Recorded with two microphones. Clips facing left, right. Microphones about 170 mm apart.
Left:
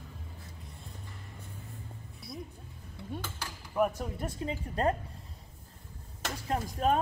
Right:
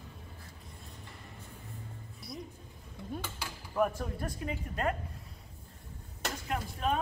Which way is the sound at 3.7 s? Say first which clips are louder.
Left 1 dB; 10° left (ahead or behind).